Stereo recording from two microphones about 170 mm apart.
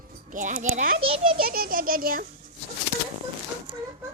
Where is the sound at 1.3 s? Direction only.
60° right (ahead or behind).